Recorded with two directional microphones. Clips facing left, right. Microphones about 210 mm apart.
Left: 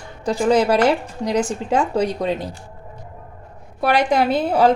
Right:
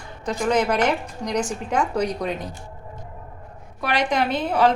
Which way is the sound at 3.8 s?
30° left (ahead or behind).